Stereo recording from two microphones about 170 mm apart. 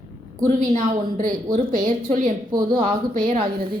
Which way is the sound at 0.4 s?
45° right (ahead or behind).